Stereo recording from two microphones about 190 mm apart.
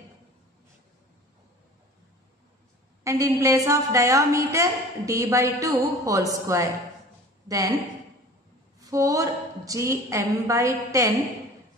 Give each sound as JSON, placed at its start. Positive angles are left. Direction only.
{"t": 3.0, "sound": "a woman's voice", "side_deg": -15}
{"t": 8.7, "sound": "a woman's voice", "side_deg": -15}